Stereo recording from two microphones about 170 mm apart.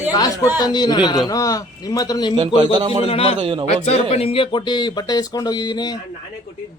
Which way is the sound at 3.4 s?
30° right (ahead or behind).